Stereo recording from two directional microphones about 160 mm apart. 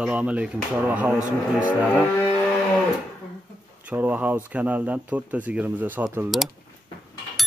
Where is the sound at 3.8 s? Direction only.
10° right (ahead or behind).